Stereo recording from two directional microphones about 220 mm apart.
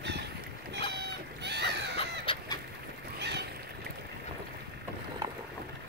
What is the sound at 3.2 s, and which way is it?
Boat, 50° right (ahead or behind).